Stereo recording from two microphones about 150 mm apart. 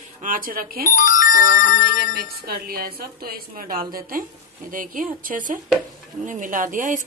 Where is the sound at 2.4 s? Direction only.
85° right.